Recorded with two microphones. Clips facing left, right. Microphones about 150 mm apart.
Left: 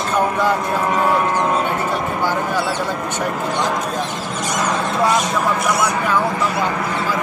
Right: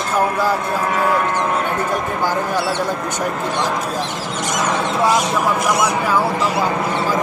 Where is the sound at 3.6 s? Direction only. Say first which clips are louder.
Left 1 dB; 5° right (ahead or behind).